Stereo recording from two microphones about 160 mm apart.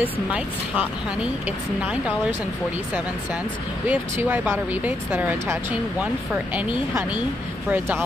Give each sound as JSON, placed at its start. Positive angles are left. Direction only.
{"t": 0.0, "sound": "speech", "side_deg": -5}
{"t": 3.8, "sound": "speech", "side_deg": -10}